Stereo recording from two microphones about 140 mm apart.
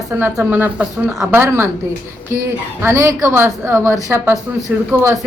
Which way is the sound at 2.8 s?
20° right (ahead or behind).